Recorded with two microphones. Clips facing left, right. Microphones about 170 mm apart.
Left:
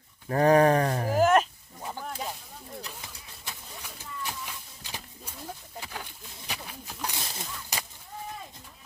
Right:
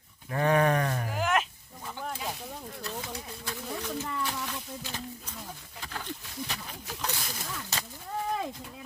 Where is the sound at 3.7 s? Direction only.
85° right.